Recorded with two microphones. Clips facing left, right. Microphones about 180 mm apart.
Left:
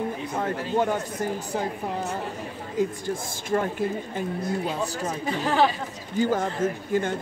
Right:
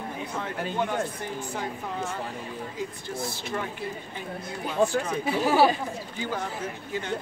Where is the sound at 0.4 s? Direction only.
45° left (ahead or behind).